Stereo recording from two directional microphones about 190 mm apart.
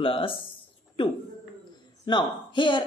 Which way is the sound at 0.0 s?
30° left (ahead or behind).